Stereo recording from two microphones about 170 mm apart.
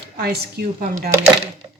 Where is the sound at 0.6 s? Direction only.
70° right (ahead or behind).